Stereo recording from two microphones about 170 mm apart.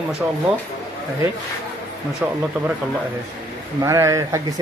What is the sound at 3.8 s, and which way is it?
Speech, 20° right (ahead or behind).